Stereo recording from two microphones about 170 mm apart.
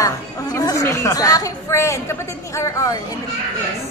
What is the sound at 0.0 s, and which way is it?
A woman's voice, 20° left (ahead or behind).